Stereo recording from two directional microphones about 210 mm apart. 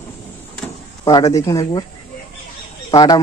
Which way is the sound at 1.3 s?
15° left (ahead or behind).